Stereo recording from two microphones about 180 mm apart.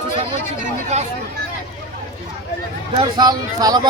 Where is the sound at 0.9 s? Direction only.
40° right (ahead or behind).